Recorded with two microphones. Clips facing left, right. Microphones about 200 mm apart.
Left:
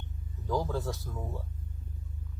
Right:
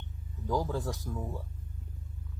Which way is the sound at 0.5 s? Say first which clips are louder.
Even; 15° right (ahead or behind).